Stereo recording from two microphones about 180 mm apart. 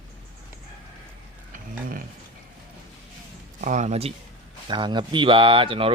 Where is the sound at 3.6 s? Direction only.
40° right (ahead or behind).